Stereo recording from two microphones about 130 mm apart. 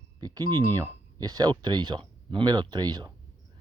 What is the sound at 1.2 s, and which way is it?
Speech, 30° right (ahead or behind).